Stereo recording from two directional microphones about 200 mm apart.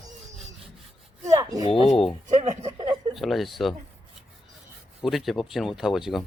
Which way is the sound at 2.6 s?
20° right (ahead or behind).